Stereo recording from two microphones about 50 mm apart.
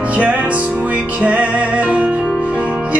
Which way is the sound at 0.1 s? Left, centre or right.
Right.